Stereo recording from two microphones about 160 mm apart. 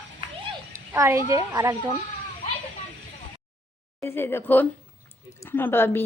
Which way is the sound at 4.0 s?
15° left (ahead or behind).